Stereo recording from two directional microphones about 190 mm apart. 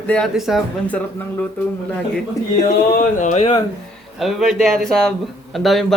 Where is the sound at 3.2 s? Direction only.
40° left (ahead or behind).